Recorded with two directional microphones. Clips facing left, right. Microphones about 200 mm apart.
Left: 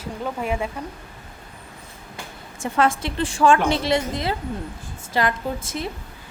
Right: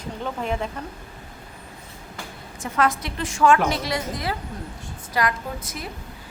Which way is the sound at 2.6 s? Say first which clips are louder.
Left 2 dB; 30° left (ahead or behind).